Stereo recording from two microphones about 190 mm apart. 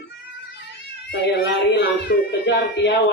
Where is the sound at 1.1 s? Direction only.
65° left (ahead or behind).